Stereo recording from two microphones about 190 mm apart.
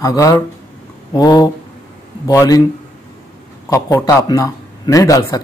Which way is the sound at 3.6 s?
15° left (ahead or behind).